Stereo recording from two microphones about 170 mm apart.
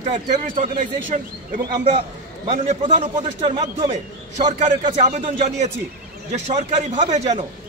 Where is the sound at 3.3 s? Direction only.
30° right (ahead or behind).